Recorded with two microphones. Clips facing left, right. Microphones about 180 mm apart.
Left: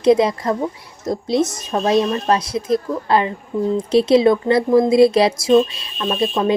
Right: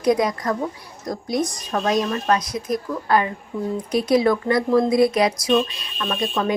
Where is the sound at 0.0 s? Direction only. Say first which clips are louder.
Left 5 dB; 25° left (ahead or behind).